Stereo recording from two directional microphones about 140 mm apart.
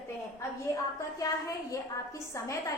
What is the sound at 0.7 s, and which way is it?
A woman's voice, 20° left (ahead or behind).